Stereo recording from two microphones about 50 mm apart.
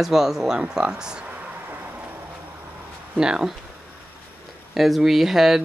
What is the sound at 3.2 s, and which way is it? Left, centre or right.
Speech, centre.